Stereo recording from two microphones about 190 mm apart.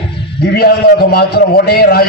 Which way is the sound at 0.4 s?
55° left (ahead or behind).